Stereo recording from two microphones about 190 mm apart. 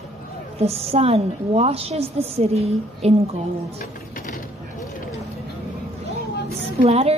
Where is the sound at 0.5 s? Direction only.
30° right (ahead or behind).